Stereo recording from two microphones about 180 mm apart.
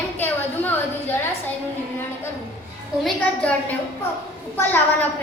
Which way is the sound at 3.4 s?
10° left (ahead or behind).